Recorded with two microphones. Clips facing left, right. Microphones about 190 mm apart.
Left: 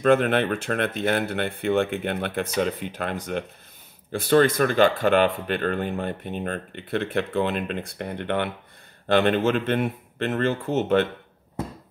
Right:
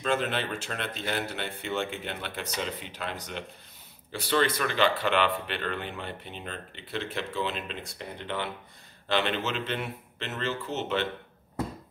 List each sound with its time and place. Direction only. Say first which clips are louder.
0.0 s speech: left 9 dB; 55° left (ahead or behind)